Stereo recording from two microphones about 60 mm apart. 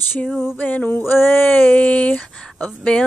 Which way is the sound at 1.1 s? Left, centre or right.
Left.